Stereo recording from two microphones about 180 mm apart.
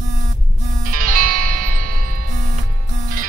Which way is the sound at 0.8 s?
50° right (ahead or behind).